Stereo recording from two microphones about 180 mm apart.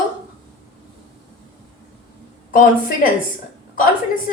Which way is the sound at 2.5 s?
50° left (ahead or behind).